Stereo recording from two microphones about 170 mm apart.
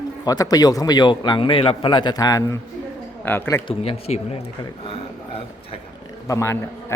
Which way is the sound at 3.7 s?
35° left (ahead or behind).